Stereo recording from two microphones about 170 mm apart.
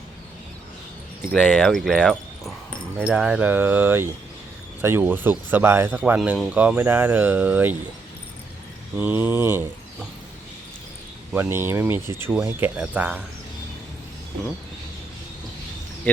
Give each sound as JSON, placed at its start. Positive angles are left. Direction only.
{"t": 1.4, "sound": "speech", "side_deg": 10}
{"t": 9.0, "sound": "speech", "side_deg": -10}
{"t": 11.3, "sound": "speech", "side_deg": -15}